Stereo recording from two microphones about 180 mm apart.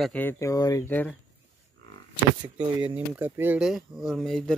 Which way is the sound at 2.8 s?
10° right (ahead or behind).